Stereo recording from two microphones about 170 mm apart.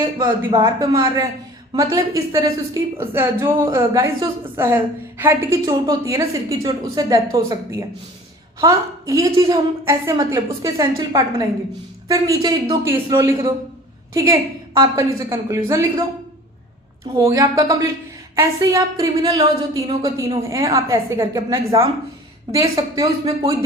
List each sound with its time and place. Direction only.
0.0 s a woman's voice: 30° right (ahead or behind)
0.6 s a woman's voice: 20° right (ahead or behind)
8.6 s a woman's voice: 20° right (ahead or behind)
17.2 s a woman's voice: 20° right (ahead or behind)